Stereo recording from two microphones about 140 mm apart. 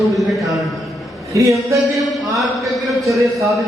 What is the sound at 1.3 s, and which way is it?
Speech, 25° right (ahead or behind).